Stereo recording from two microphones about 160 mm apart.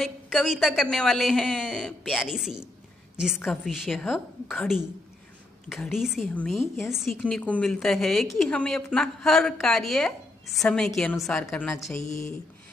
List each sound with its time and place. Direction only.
0.0 s a woman's voice: centre (ahead or behind); by 12.4 s 20° left (ahead or behind)